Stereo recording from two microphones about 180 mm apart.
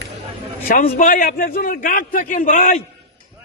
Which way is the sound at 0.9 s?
50° left (ahead or behind).